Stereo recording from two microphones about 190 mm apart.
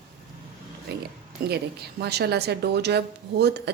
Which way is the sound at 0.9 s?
55° right (ahead or behind).